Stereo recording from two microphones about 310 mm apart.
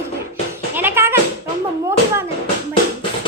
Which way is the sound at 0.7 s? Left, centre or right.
Centre.